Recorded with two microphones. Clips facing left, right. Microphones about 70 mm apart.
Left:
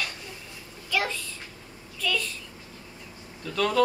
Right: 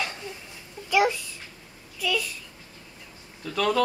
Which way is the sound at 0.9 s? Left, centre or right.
Centre.